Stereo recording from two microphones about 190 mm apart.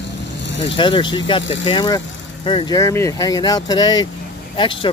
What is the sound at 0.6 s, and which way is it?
Speech, 25° left (ahead or behind).